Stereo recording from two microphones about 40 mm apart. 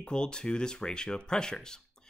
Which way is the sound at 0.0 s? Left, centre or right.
Left.